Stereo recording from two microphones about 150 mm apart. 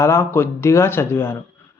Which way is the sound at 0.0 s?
20° left (ahead or behind).